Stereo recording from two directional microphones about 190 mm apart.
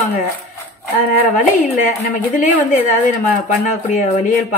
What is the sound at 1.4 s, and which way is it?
Speech, 40° left (ahead or behind).